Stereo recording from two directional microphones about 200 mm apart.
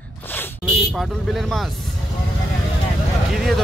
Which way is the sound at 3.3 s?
Centre (ahead or behind).